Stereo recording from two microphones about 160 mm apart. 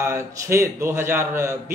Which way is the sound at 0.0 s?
15° right (ahead or behind).